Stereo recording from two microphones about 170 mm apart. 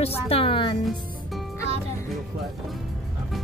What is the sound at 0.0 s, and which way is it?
Music, 35° left (ahead or behind).